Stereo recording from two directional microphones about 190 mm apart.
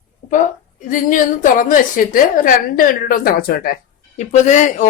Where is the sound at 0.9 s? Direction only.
45° left (ahead or behind).